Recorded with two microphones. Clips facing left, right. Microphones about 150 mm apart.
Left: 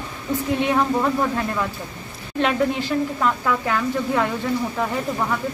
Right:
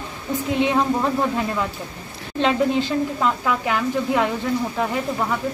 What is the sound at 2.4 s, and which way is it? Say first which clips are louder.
A woman's voice: right 2 dB; 25° right (ahead or behind).